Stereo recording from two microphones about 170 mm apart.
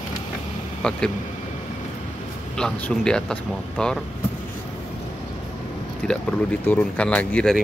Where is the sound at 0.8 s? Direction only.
5° left (ahead or behind).